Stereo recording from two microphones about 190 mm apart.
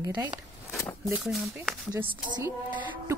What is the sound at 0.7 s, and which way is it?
Speech, centre (ahead or behind).